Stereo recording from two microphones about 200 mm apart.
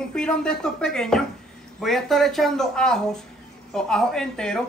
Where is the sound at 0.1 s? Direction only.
5° left (ahead or behind).